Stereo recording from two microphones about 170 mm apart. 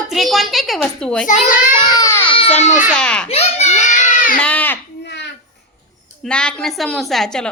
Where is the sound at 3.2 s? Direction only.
40° left (ahead or behind).